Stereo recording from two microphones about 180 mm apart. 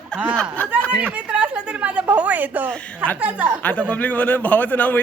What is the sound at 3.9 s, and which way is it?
A man's voice, 10° left (ahead or behind).